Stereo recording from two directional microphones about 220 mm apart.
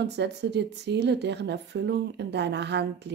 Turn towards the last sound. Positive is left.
turn(degrees=-50)  # may be behind; listen again after turning